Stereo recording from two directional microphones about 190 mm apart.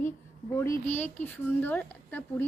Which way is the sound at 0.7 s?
40° left (ahead or behind).